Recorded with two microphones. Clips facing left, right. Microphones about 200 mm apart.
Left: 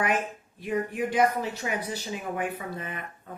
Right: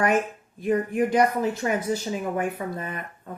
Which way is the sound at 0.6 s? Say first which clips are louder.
Right 6 dB; 45° right (ahead or behind).